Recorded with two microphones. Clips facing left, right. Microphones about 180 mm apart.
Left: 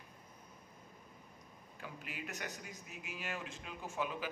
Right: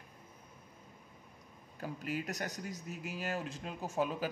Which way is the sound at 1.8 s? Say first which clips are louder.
Right 9 dB; 40° right (ahead or behind).